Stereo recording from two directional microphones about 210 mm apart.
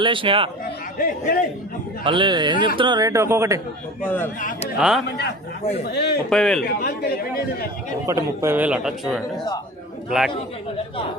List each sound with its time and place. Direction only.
0.0 s speech: 25° right (ahead or behind)
0.9 s speech: 40° left (ahead or behind)
2.0 s a man's voice: 20° right (ahead or behind)
4.0 s speech: 10° left (ahead or behind)
4.4 s speech: 40° left (ahead or behind)
4.8 s a man's voice: centre (ahead or behind)
5.0 s speech: 55° left (ahead or behind)
6.3 s a man's voice: centre (ahead or behind)
6.7 s speech: 45° left (ahead or behind)
8.0 s a man's voice: 15° right (ahead or behind)